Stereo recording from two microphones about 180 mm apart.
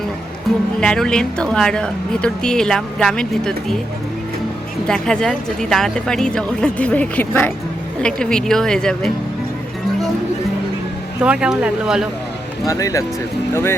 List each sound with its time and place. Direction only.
0.8 s speech: 5° left (ahead or behind)
4.9 s speech: 5° left (ahead or behind)
11.2 s speech: 5° right (ahead or behind)
12.6 s speech: 20° left (ahead or behind)